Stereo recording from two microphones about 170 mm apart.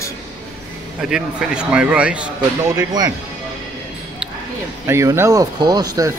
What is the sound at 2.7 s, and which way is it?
Speech, 25° right (ahead or behind).